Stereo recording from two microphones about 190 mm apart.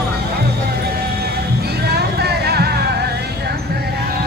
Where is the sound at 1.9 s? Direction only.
60° right (ahead or behind).